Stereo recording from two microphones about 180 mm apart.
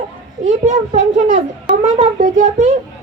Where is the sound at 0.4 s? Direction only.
40° right (ahead or behind).